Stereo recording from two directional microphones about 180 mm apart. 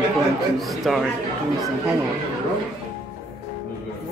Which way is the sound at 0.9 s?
Centre (ahead or behind).